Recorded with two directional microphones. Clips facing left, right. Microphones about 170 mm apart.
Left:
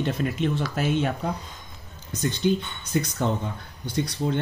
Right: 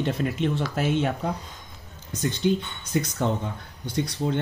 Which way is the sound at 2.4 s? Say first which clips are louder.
Even; 25° right (ahead or behind).